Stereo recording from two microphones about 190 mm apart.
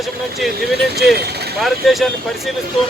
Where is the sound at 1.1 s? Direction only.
60° right (ahead or behind).